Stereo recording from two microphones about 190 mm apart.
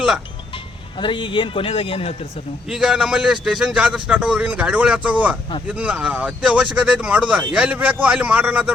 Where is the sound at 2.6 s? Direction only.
5° right (ahead or behind).